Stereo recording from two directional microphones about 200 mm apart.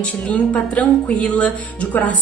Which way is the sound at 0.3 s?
5° left (ahead or behind).